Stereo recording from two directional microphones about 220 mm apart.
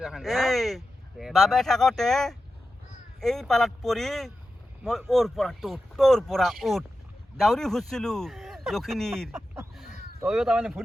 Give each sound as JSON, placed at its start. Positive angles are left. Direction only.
{"t": 0.0, "sound": "speech", "side_deg": 0}